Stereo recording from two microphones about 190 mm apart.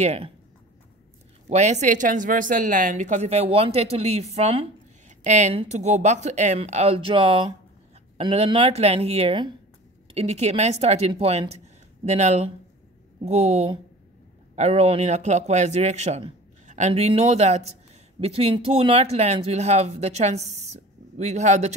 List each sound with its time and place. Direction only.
0.0 s speech: 35° right (ahead or behind)
1.5 s speech: 40° right (ahead or behind)